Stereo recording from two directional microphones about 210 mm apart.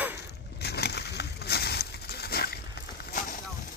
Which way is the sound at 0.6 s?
50° left (ahead or behind).